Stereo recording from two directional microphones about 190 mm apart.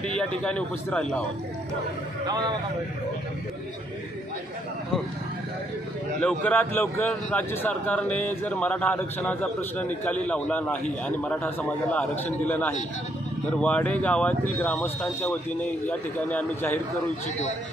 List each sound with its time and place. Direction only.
0.0 s a man's voice: 5° left (ahead or behind)
2.2 s speech: 20° right (ahead or behind)
6.2 s a man's voice: 10° left (ahead or behind)